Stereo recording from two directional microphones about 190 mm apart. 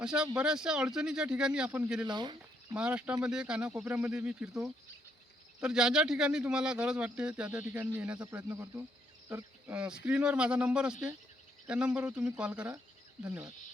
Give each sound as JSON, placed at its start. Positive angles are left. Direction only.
{"t": 0.0, "sound": "speech", "side_deg": -5}
{"t": 2.0, "sound": "speech", "side_deg": -25}
{"t": 2.7, "sound": "speech", "side_deg": -5}
{"t": 5.5, "sound": "speech", "side_deg": -5}